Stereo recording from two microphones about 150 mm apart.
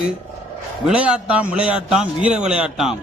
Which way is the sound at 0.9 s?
10° right (ahead or behind).